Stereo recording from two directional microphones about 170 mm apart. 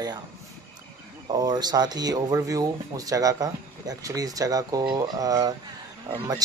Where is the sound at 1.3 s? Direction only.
25° right (ahead or behind).